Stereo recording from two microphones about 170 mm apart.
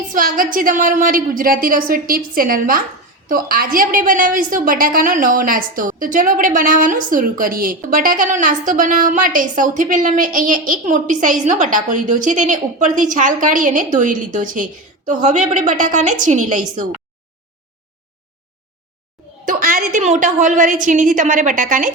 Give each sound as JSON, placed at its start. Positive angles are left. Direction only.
{"t": 0.1, "sound": "a woman's voice", "side_deg": -55}
{"t": 19.5, "sound": "a woman's voice", "side_deg": -50}